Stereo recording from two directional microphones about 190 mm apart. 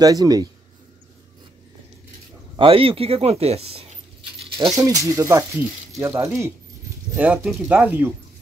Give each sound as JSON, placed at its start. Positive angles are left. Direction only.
{"t": 0.0, "sound": "a man's voice", "side_deg": -20}
{"t": 2.5, "sound": "speech", "side_deg": -30}
{"t": 4.6, "sound": "speech", "side_deg": -20}